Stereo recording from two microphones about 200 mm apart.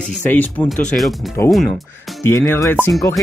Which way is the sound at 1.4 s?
15° left (ahead or behind).